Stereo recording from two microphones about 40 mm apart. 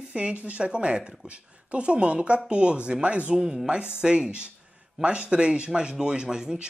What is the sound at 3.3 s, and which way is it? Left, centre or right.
Speech, centre.